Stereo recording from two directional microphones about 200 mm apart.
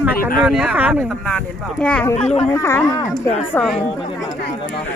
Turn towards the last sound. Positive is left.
turn(degrees=0)  # may be behind; listen again after turning